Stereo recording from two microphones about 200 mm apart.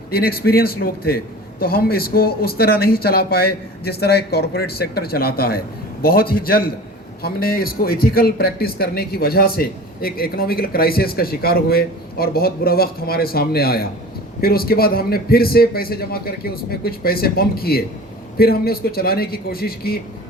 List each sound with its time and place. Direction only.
0.1 s a man's voice: 50° left (ahead or behind)